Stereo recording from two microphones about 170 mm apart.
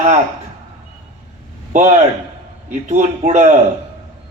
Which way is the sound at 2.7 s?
45° right (ahead or behind).